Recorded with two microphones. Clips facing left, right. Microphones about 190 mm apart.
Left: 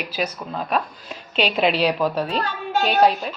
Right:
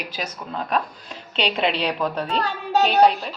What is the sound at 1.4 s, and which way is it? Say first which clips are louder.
A woman's voice: left 3 dB; 5° left (ahead or behind).